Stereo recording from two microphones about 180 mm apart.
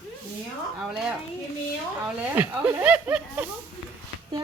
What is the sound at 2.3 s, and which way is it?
Speech, 10° right (ahead or behind).